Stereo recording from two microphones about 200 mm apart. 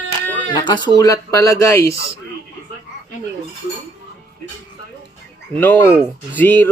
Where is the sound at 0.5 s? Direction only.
20° left (ahead or behind).